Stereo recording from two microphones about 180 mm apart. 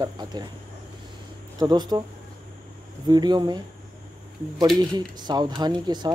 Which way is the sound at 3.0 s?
25° right (ahead or behind).